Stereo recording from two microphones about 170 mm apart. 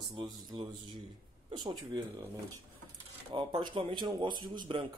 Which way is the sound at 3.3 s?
30° right (ahead or behind).